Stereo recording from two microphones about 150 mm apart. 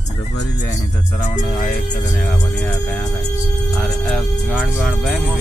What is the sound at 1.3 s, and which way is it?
Music, 55° left (ahead or behind).